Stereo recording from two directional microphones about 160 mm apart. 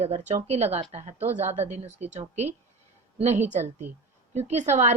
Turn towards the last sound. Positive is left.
turn(degrees=-45)  # may be behind; listen again after turning